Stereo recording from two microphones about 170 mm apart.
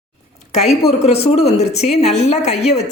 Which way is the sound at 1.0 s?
35° left (ahead or behind).